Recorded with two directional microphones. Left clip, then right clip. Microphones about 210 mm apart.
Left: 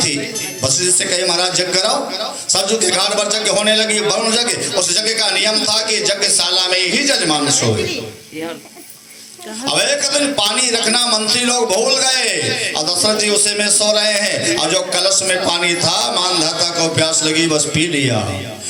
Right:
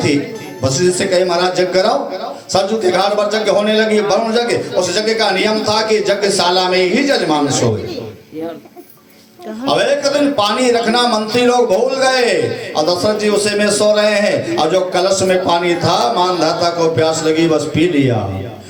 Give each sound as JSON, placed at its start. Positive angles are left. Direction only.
{"t": 0.6, "sound": "a man's voice", "side_deg": -50}
{"t": 9.6, "sound": "a man's voice", "side_deg": -45}